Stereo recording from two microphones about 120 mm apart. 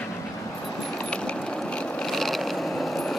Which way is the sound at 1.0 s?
10° left (ahead or behind).